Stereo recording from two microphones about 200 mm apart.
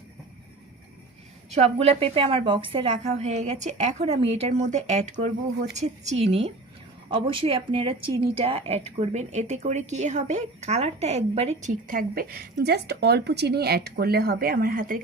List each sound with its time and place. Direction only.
1.8 s a woman's voice: 30° right (ahead or behind); by 14.9 s 45° right (ahead or behind)